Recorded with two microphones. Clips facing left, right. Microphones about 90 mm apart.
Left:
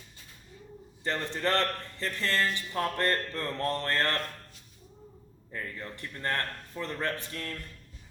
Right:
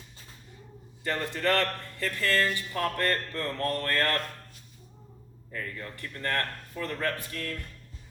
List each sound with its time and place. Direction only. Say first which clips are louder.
1.0 s speech: right 2 dB; 20° left (ahead or behind)
5.5 s speech: right 1 dB; 20° left (ahead or behind)